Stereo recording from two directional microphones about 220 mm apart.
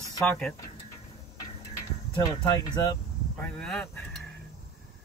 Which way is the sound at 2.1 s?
20° left (ahead or behind).